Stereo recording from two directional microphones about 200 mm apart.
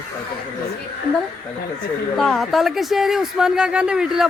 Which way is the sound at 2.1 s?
Centre (ahead or behind).